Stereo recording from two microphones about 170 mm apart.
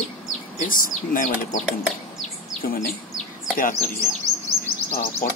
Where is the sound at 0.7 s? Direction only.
55° left (ahead or behind).